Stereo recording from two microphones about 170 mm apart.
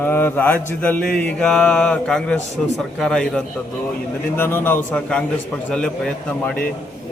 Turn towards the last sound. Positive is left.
turn(degrees=5)  # may be behind; listen again after turning